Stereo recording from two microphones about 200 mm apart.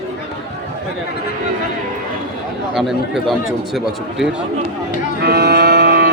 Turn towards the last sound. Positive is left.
turn(degrees=-55)  # may be behind; listen again after turning